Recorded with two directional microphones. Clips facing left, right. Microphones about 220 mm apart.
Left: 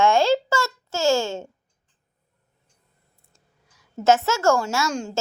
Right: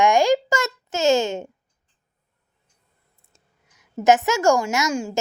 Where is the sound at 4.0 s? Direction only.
15° right (ahead or behind).